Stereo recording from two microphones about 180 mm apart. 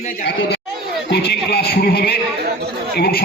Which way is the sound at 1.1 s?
65° left (ahead or behind).